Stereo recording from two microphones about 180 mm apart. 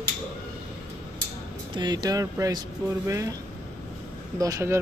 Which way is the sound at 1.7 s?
25° right (ahead or behind).